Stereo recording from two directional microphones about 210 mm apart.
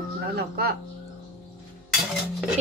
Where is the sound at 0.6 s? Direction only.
50° right (ahead or behind).